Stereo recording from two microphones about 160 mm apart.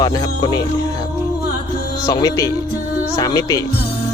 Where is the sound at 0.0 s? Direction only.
25° left (ahead or behind).